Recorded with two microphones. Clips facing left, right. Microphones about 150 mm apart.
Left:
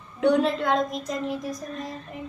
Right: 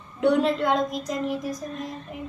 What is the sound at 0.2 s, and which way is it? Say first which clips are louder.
Speech: even; centre (ahead or behind).